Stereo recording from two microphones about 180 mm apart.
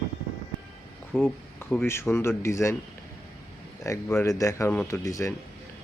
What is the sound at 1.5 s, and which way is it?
Speech, 10° left (ahead or behind).